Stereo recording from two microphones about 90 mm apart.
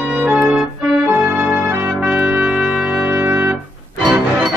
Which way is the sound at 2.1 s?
15° right (ahead or behind).